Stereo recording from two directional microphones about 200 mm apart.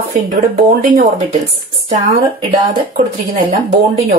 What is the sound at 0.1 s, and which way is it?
Speech, 40° right (ahead or behind).